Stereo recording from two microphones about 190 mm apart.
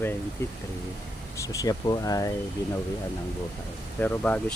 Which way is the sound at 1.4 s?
20° left (ahead or behind).